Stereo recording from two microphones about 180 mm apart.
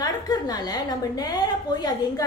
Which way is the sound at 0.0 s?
20° left (ahead or behind).